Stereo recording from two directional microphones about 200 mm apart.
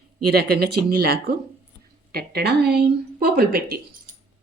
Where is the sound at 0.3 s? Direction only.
55° right (ahead or behind).